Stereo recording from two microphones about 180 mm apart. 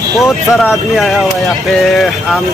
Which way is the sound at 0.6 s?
Centre (ahead or behind).